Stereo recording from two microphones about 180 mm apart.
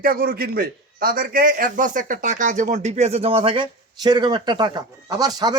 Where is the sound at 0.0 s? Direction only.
55° right (ahead or behind).